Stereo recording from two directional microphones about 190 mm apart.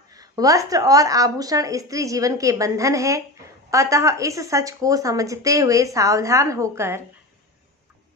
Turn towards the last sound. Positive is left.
turn(degrees=-15)  # may be behind; listen again after turning